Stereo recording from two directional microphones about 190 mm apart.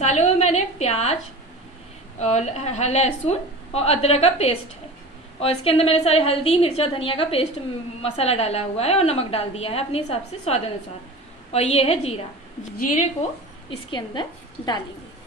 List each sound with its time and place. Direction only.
0.0 s a woman's voice: 35° left (ahead or behind)
2.1 s a woman's voice: 35° left (ahead or behind)
12.7 s a woman's voice: 45° left (ahead or behind)
13.7 s a woman's voice: 25° left (ahead or behind)